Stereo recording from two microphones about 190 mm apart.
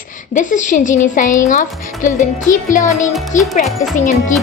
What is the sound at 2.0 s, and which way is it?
Music, 45° left (ahead or behind).